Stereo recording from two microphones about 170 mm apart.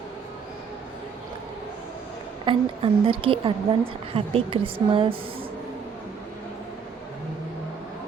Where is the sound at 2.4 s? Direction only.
30° right (ahead or behind).